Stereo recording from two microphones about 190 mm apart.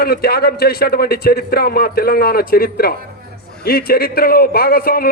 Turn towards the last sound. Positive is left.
turn(degrees=50)  # may be behind; listen again after turning